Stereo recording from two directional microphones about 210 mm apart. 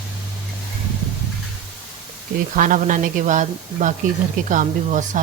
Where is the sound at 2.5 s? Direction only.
40° right (ahead or behind).